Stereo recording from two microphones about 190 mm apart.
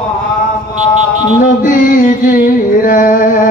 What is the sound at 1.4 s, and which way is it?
Music, 45° left (ahead or behind).